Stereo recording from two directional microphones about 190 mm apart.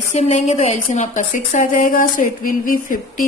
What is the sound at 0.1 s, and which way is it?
A woman's voice, 35° left (ahead or behind).